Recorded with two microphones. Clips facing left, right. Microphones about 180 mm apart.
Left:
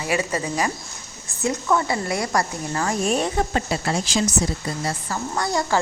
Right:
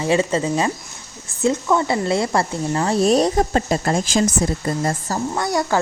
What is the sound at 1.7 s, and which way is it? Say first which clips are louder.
Speech: right 4 dB; 25° right (ahead or behind).